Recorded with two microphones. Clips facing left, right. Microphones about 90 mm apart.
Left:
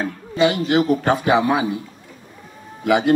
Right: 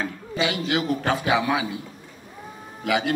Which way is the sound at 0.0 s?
40° left (ahead or behind).